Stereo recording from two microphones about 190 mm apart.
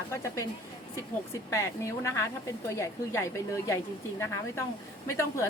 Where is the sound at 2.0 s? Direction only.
15° left (ahead or behind).